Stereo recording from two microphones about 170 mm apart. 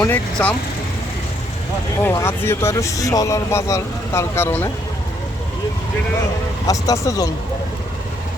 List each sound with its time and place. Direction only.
0.1 s speech: 10° left (ahead or behind)
2.0 s speech: 15° left (ahead or behind)
6.7 s speech: 20° left (ahead or behind)